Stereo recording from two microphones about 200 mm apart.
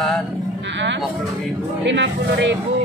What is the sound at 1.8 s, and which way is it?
Speech, 60° right (ahead or behind).